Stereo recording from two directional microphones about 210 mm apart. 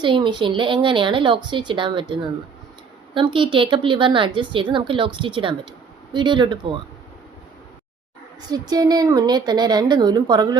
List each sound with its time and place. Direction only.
0.0 s a woman's voice: 20° right (ahead or behind)
3.2 s a woman's voice: 25° right (ahead or behind)
8.4 s a woman's voice: 20° right (ahead or behind)